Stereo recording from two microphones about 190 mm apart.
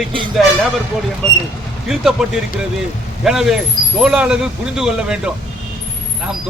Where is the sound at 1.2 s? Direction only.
5° left (ahead or behind).